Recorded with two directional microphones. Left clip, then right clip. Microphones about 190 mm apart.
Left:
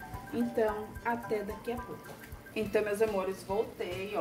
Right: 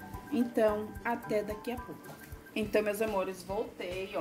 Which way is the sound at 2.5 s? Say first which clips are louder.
Even; 40° right (ahead or behind).